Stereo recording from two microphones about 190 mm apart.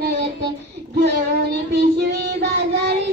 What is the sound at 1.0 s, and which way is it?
Child singing, 60° right (ahead or behind).